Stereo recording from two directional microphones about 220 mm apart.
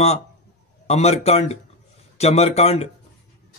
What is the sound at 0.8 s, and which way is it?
Speech, 30° left (ahead or behind).